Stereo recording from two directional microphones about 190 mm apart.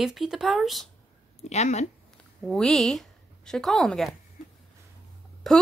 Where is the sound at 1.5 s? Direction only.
35° left (ahead or behind).